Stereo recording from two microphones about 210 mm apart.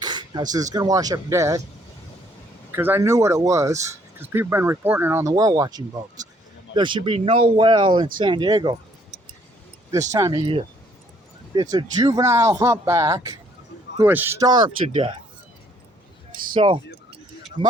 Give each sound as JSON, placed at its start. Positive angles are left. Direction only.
{"t": 0.0, "sound": "speech", "side_deg": -20}
{"t": 2.7, "sound": "speech", "side_deg": -10}
{"t": 10.1, "sound": "speech", "side_deg": -15}
{"t": 16.6, "sound": "music", "side_deg": -25}